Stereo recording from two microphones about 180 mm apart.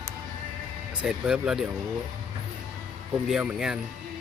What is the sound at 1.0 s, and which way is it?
Speech, 5° right (ahead or behind).